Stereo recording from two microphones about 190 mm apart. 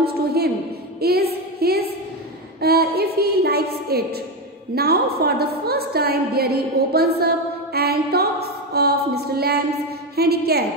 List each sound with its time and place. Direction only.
0.0 s a woman's voice: 55° right (ahead or behind)